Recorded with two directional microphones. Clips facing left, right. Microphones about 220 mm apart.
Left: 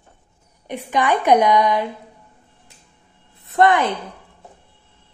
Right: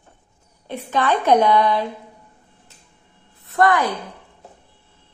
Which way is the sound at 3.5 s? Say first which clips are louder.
Left 2 dB; 25° left (ahead or behind).